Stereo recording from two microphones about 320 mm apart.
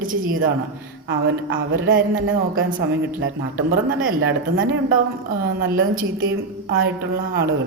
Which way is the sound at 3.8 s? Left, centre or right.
Right.